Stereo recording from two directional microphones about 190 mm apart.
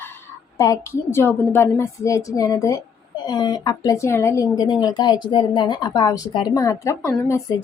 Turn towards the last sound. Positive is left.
turn(degrees=15)  # may be behind; listen again after turning